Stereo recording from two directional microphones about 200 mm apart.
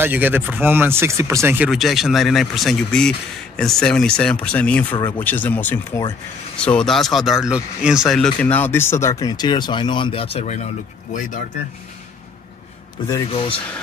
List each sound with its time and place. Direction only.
0.0 s speech: 10° right (ahead or behind); by 10.6 s 30° left (ahead or behind)
13.1 s speech: 25° left (ahead or behind)